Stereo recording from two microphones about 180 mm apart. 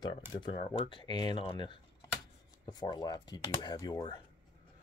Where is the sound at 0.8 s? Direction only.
25° left (ahead or behind).